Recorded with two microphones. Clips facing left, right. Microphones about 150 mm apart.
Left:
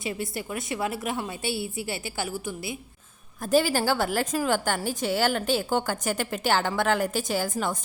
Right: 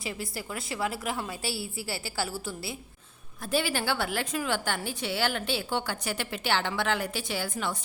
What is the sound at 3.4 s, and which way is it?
A woman's voice, 40° left (ahead or behind).